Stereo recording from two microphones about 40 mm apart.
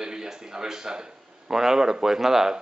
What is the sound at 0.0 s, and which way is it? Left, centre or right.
Speech, centre.